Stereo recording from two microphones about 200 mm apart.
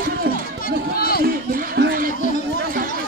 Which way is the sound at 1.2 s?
50° right (ahead or behind).